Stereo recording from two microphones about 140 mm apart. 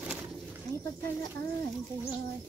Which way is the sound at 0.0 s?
10° right (ahead or behind).